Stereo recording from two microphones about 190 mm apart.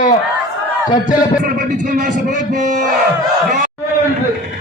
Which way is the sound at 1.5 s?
45° right (ahead or behind).